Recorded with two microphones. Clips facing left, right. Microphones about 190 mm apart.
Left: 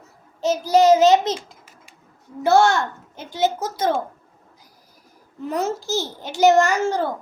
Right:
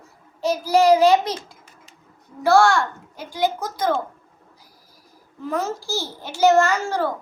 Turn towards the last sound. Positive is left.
turn(degrees=20)  # may be behind; listen again after turning